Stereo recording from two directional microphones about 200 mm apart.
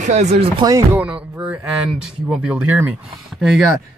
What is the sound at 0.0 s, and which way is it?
Speech, 35° right (ahead or behind).